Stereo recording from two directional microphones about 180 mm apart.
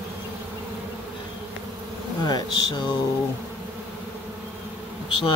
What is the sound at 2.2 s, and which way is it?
Insect, 25° left (ahead or behind).